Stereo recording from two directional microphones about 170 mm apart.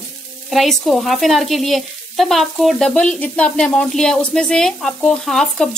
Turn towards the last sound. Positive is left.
turn(degrees=5)  # may be behind; listen again after turning